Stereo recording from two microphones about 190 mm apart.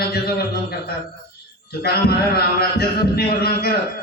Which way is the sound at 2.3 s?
55° left (ahead or behind).